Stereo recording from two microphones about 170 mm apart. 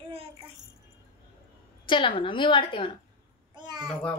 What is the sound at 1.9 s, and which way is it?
A woman's voice, 30° left (ahead or behind).